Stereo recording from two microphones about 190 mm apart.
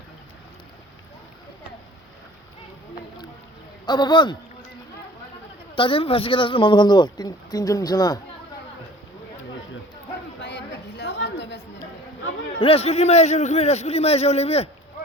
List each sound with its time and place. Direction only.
3.8 s speech: 25° left (ahead or behind)
5.7 s speech: 25° left (ahead or behind)
10.4 s chatter: 65° left (ahead or behind)
12.5 s a man's voice: 30° left (ahead or behind)